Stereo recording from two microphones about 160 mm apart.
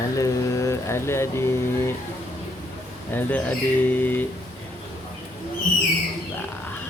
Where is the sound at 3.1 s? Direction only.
10° left (ahead or behind).